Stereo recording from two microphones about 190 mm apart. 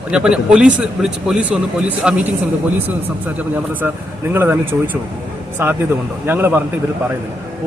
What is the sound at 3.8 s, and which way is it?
Speech, 10° right (ahead or behind).